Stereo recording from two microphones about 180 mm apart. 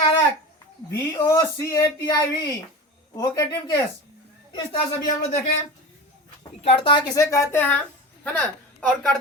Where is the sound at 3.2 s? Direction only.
20° left (ahead or behind).